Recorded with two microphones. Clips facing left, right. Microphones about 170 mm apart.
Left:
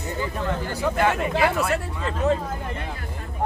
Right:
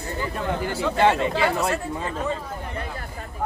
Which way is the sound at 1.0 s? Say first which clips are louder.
Right 2 dB; 25° right (ahead or behind).